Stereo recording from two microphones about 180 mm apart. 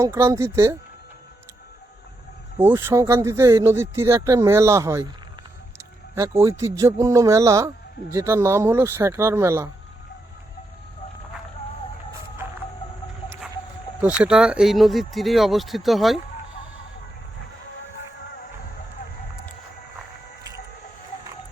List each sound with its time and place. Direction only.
0.0 s speech: 15° right (ahead or behind)
2.6 s speech: 15° right (ahead or behind)
14.2 s speech: 5° right (ahead or behind)